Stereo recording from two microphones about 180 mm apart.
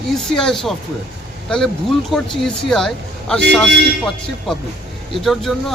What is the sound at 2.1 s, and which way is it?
Speech, centre (ahead or behind).